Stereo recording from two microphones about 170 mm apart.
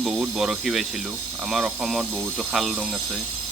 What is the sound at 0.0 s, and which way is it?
Speech, 5° right (ahead or behind).